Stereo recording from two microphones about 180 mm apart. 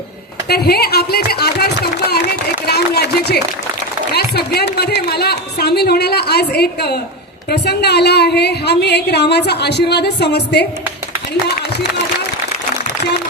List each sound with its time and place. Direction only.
0.4 s a woman's voice: 60° left (ahead or behind)